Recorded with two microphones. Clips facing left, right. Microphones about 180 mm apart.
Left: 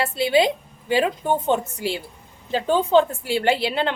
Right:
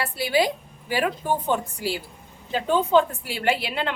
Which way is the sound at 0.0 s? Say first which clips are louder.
Left 4 dB; 25° left (ahead or behind).